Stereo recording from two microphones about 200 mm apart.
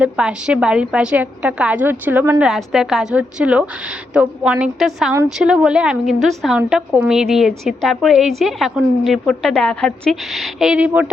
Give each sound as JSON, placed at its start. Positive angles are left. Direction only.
{"t": 0.0, "sound": "a woman's voice", "side_deg": -5}